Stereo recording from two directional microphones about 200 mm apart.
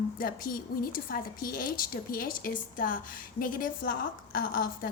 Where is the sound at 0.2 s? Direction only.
45° left (ahead or behind).